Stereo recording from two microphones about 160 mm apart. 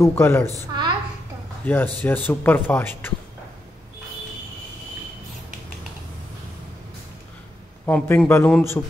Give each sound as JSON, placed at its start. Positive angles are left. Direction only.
{"t": 0.0, "sound": "speech", "side_deg": 15}
{"t": 0.5, "sound": "a woman's voice", "side_deg": -25}
{"t": 1.7, "sound": "speech", "side_deg": 15}
{"t": 7.8, "sound": "speech", "side_deg": 10}